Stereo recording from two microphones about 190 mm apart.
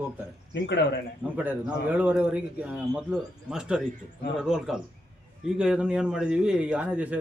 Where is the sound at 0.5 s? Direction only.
70° left (ahead or behind).